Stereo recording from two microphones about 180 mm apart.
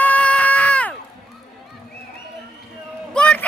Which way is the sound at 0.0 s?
10° left (ahead or behind).